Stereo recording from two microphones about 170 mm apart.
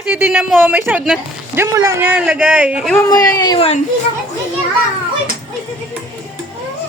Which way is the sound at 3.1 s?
25° left (ahead or behind).